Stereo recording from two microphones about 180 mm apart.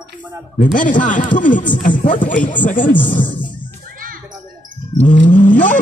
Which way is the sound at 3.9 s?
50° right (ahead or behind).